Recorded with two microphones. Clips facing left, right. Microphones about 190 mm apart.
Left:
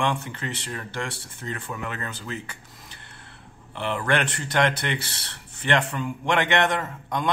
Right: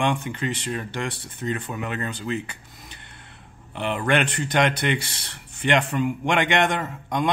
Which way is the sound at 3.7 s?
20° right (ahead or behind).